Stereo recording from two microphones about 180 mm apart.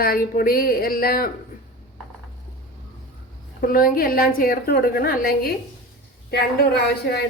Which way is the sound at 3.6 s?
55° left (ahead or behind).